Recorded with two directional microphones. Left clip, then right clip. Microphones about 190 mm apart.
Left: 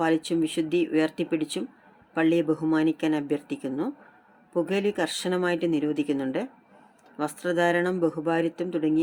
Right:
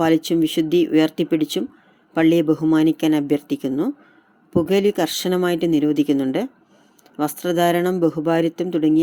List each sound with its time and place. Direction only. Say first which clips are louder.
0.0 s speech: right 7 dB; 30° right (ahead or behind)